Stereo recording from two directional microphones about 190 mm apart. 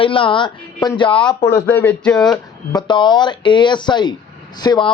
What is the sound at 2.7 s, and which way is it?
A man's voice, 25° left (ahead or behind).